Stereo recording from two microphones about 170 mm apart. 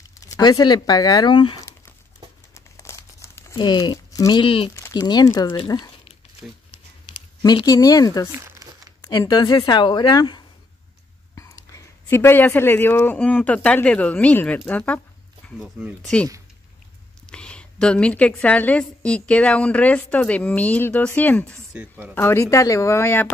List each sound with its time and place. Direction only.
0.3 s speech: 25° left (ahead or behind)
2.5 s crumpling: 15° left (ahead or behind)
4.8 s a woman's voice: 25° left (ahead or behind)
7.4 s a woman's voice: 25° left (ahead or behind)
8.3 s speech: 15° right (ahead or behind)
9.0 s a woman's voice: 25° left (ahead or behind)
12.1 s a woman's voice: 15° left (ahead or behind)
15.4 s a sound: 10° left (ahead or behind)
17.3 s a woman's voice: 5° left (ahead or behind)
21.7 s speech: 5° right (ahead or behind)
22.1 s a woman's voice: 15° left (ahead or behind)